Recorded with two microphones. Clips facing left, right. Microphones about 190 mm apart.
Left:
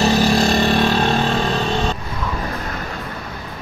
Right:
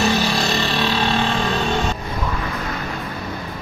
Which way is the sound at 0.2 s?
50° left (ahead or behind).